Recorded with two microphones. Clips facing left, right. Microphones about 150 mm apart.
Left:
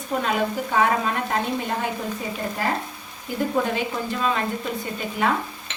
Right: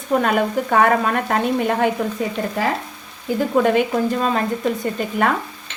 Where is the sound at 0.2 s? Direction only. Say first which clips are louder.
Right 5 dB; 55° right (ahead or behind).